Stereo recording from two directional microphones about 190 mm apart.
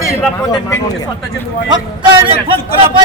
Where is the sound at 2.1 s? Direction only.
30° right (ahead or behind).